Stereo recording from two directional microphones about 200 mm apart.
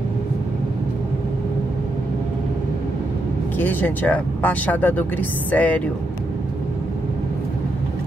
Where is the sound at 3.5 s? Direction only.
10° left (ahead or behind).